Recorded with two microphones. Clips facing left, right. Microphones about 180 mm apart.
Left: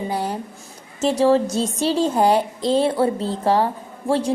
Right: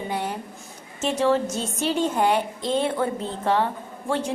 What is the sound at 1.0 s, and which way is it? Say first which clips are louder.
A woman's voice: left 5 dB; 35° left (ahead or behind).